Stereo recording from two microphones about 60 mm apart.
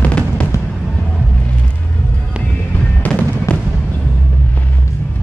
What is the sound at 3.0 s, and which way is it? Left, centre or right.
Fireworks, left.